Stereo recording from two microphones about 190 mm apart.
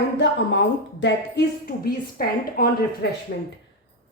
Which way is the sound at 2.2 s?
50° left (ahead or behind).